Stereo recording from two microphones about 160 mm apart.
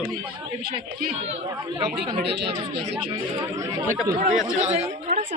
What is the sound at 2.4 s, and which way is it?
Speech, 35° right (ahead or behind).